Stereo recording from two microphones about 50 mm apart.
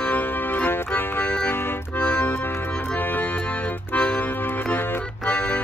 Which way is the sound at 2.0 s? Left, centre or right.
Left.